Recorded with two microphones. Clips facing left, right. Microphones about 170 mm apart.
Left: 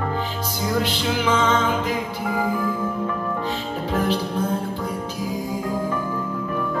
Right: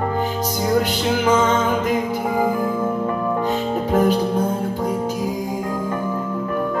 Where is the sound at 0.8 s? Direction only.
45° right (ahead or behind).